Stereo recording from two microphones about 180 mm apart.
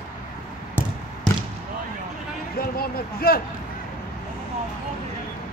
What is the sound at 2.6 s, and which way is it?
Speech, 55° left (ahead or behind).